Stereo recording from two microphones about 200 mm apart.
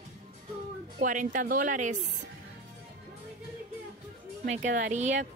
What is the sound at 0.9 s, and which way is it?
Speech, 40° right (ahead or behind).